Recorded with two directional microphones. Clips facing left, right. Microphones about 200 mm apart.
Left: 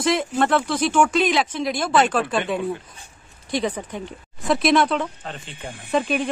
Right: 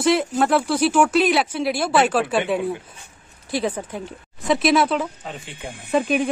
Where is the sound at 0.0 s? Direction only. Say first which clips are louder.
Right 2 dB; 5° right (ahead or behind).